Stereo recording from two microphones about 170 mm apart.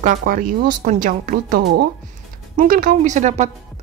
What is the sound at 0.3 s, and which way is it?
A woman's voice, 50° right (ahead or behind).